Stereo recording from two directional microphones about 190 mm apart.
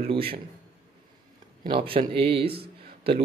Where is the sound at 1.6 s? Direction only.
25° right (ahead or behind).